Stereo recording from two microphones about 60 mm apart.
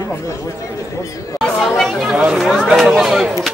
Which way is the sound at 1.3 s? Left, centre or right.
Centre.